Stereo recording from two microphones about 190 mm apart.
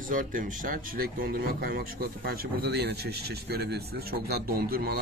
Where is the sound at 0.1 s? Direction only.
45° right (ahead or behind).